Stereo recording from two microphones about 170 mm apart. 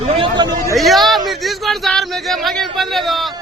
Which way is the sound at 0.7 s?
Centre (ahead or behind).